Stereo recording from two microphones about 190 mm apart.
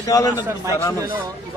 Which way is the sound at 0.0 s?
20° left (ahead or behind).